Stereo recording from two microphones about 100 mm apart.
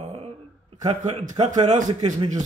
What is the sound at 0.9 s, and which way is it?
Speech, 80° right.